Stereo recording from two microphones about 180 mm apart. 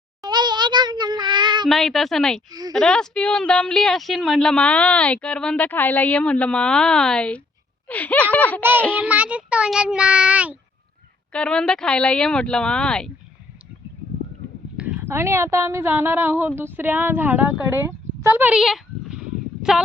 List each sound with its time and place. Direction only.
0.2 s a sound: 25° right (ahead or behind)
1.6 s a woman's voice: centre (ahead or behind)
2.5 s speech: 20° right (ahead or behind)
2.7 s a woman's voice: 5° left (ahead or behind)
9.0 s child singing: 10° right (ahead or behind)
11.3 s a woman's voice: 5° left (ahead or behind)
14.8 s a woman's voice: 10° right (ahead or behind)
19.6 s a sound: 5° right (ahead or behind)